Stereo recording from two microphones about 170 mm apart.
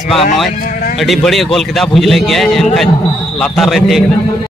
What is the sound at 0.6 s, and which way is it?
Speech, 55° left (ahead or behind).